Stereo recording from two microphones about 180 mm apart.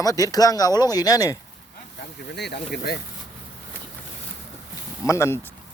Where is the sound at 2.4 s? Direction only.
65° left (ahead or behind).